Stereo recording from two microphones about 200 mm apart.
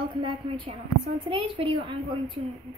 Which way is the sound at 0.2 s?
25° right (ahead or behind).